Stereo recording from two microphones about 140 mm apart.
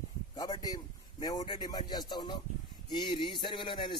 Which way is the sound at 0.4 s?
25° left (ahead or behind).